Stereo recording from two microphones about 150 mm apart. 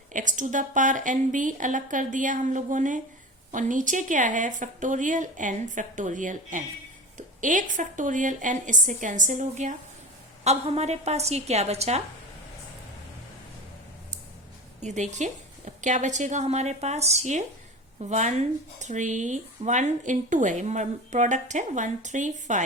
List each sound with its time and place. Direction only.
0.1 s speech: 60° right (ahead or behind)
14.8 s speech: 50° right (ahead or behind)